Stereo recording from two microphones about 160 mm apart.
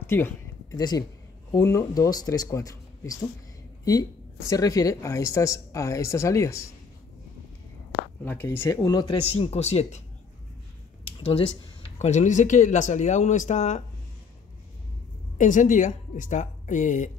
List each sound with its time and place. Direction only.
0.0 s a sound: 15° left (ahead or behind)
1.5 s speech: 20° left (ahead or behind)
4.5 s speech: 20° left (ahead or behind)
8.3 s speech: 15° left (ahead or behind)
9.2 s speech: 40° left (ahead or behind)
11.2 s speech: 35° left (ahead or behind)
15.3 s speech: 50° left (ahead or behind)